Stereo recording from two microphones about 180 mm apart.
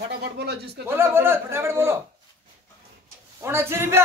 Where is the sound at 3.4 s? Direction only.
15° right (ahead or behind).